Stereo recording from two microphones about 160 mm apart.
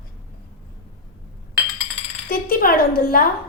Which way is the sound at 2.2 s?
65° left (ahead or behind).